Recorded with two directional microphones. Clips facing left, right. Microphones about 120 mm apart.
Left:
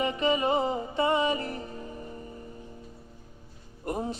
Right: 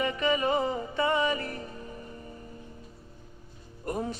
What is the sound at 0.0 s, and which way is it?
Music, 25° left (ahead or behind).